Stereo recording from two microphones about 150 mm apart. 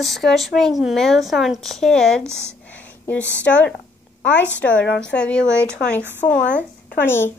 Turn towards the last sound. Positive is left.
turn(degrees=15)  # may be behind; listen again after turning